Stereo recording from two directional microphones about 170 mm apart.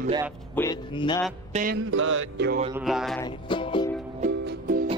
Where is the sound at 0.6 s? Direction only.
10° left (ahead or behind).